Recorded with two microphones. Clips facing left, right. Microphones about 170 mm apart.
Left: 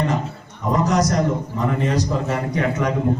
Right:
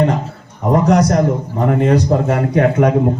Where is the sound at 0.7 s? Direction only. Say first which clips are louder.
Right 6 dB; 60° right (ahead or behind).